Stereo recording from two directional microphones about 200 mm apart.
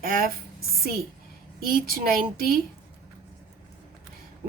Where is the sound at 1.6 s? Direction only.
45° right (ahead or behind).